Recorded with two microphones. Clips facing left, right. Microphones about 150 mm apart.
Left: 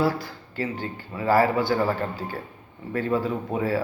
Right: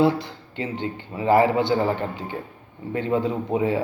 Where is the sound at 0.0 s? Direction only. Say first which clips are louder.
Right 4 dB; 20° right (ahead or behind).